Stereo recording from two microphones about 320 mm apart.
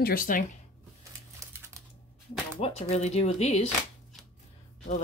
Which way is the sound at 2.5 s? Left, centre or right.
Centre.